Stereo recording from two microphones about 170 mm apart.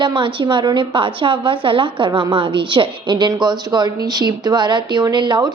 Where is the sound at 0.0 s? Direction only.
30° right (ahead or behind).